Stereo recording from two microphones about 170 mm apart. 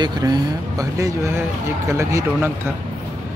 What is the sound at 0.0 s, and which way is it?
Speech, 20° right (ahead or behind).